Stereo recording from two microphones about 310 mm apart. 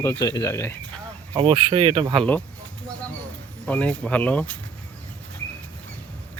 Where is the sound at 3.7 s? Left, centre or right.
Centre.